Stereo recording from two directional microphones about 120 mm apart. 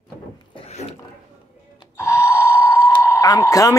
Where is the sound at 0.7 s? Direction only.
65° left (ahead or behind).